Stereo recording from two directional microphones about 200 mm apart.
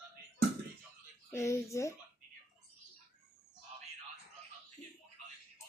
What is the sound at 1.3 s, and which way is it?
Speech, 15° left (ahead or behind).